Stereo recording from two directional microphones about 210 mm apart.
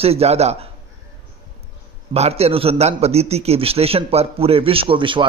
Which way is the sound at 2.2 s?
30° right (ahead or behind).